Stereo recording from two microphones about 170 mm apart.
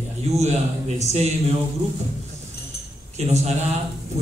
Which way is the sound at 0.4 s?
40° right (ahead or behind).